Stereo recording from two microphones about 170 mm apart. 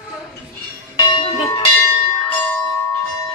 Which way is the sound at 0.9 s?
30° left (ahead or behind).